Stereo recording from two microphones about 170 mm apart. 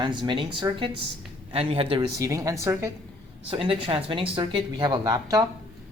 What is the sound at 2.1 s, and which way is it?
Speech, 20° right (ahead or behind).